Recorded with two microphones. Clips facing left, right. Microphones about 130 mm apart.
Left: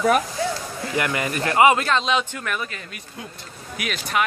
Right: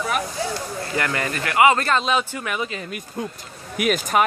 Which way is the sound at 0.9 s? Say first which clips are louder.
Left 1 dB; 15° left (ahead or behind).